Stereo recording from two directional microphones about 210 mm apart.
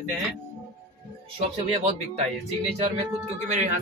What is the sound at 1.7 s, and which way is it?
Speech, 30° right (ahead or behind).